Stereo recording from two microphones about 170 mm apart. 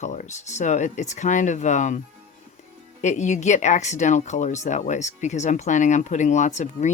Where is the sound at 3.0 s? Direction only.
45° left (ahead or behind).